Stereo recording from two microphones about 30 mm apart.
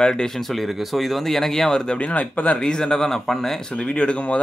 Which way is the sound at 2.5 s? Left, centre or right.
Left.